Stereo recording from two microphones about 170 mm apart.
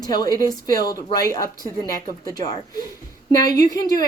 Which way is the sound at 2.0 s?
20° left (ahead or behind).